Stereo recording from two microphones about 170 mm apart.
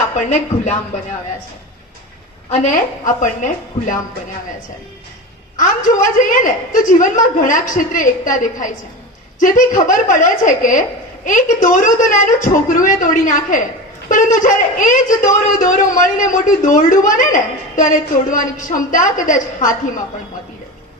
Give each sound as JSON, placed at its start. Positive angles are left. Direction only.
{"t": 0.1, "sound": "speech", "side_deg": 45}
{"t": 3.2, "sound": "speech", "side_deg": 50}
{"t": 5.5, "sound": "speech", "side_deg": 50}